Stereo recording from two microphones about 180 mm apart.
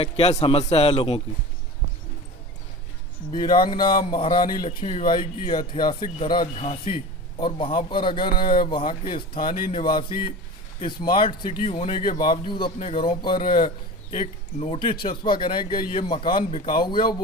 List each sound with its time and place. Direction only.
0.0 s a man's voice: 35° left (ahead or behind)
3.3 s a man's voice: 25° left (ahead or behind)
4.6 s a man's voice: 35° left (ahead or behind)
12.2 s a man's voice: 25° left (ahead or behind)